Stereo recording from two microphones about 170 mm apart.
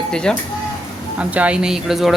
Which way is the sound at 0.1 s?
5° left (ahead or behind).